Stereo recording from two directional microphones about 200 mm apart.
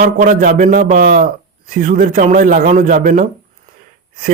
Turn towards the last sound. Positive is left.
turn(degrees=-45)  # may be behind; listen again after turning